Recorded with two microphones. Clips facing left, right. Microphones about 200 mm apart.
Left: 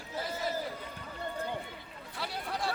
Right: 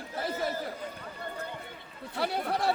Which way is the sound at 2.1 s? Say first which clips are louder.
Right 8 dB; 60° right (ahead or behind).